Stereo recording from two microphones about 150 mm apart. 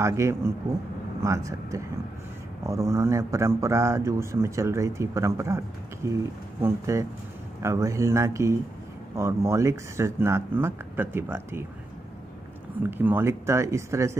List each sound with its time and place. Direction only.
0.0 s a man's voice: 20° right (ahead or behind)
12.9 s a man's voice: 15° right (ahead or behind)